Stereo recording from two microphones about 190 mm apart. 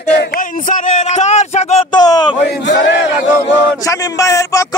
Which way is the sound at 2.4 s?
65° left (ahead or behind).